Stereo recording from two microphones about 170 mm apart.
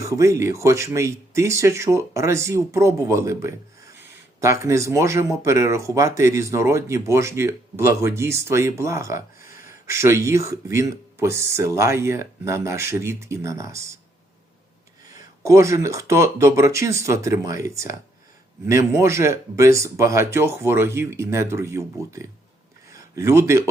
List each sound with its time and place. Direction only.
0.0 s speech: 20° right (ahead or behind)
15.1 s speech: 15° right (ahead or behind)
22.9 s a sound: 20° right (ahead or behind)